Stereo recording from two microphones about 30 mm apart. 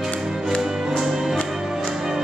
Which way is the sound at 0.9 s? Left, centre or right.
Centre.